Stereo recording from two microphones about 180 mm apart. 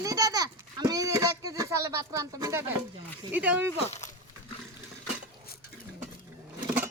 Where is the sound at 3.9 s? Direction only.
40° left (ahead or behind).